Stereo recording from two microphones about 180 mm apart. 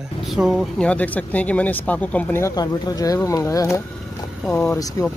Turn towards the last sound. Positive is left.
turn(degrees=20)  # may be behind; listen again after turning